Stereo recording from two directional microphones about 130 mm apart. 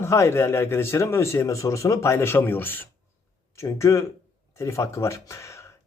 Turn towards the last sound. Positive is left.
turn(degrees=25)  # may be behind; listen again after turning